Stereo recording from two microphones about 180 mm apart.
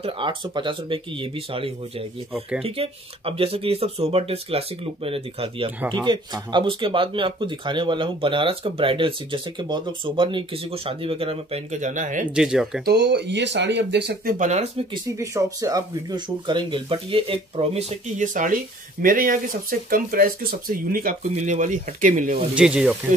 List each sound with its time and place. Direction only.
0.0 s speech: 25° right (ahead or behind); by 12.3 s 45° right (ahead or behind)
12.3 s speech: 5° right (ahead or behind)
12.8 s speech: 70° right (ahead or behind)
14.4 s speech: 40° right (ahead or behind)
15.0 s speech: 15° right (ahead or behind); by 22.4 s 45° right (ahead or behind)
22.6 s speech: 5° right (ahead or behind)